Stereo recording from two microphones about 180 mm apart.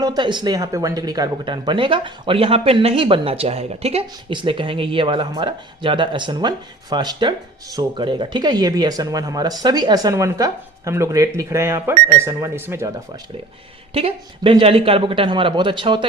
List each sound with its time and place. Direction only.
0.0 s speech: 25° right (ahead or behind)
13.9 s speech: 30° right (ahead or behind)